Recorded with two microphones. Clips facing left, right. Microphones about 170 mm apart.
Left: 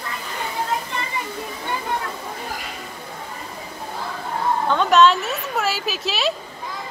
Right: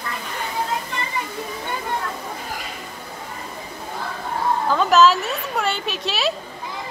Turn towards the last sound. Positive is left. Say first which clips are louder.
# even
turn(degrees=0)  # may be behind; listen again after turning